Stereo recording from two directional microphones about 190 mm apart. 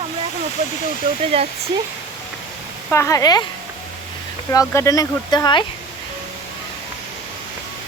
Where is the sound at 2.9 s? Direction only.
15° left (ahead or behind).